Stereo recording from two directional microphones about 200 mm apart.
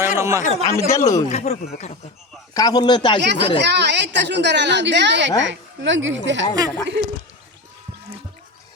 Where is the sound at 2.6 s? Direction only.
20° left (ahead or behind).